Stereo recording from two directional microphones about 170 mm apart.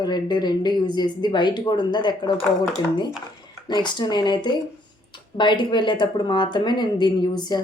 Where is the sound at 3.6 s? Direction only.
25° left (ahead or behind).